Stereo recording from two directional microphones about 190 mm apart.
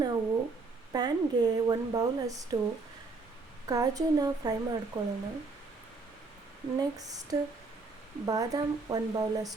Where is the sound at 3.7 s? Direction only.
20° right (ahead or behind).